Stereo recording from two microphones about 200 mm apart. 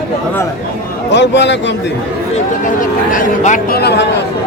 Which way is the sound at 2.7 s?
40° left (ahead or behind).